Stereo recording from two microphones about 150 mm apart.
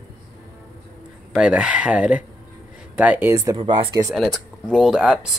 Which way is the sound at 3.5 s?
35° right (ahead or behind).